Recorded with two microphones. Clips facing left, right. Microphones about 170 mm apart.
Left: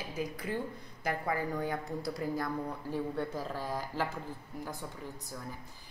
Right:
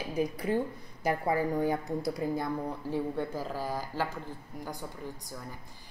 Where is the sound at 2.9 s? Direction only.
5° right (ahead or behind).